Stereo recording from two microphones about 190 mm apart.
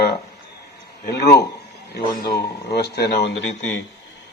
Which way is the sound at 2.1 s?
20° left (ahead or behind).